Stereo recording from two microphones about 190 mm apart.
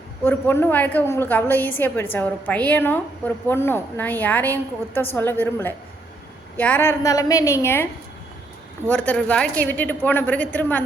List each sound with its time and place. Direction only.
0.3 s a woman's voice: 10° left (ahead or behind)
8.9 s a woman's voice: 5° left (ahead or behind)